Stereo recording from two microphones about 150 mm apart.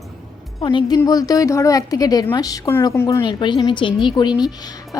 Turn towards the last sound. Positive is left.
turn(degrees=30)  # may be behind; listen again after turning